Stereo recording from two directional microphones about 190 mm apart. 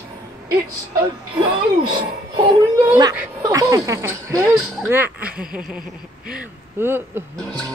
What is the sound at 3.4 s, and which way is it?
Speech, 15° right (ahead or behind).